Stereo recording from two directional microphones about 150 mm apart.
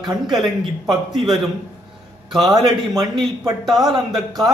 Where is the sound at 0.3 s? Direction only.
Centre (ahead or behind).